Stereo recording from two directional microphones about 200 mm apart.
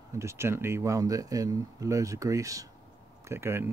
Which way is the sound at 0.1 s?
15° right (ahead or behind).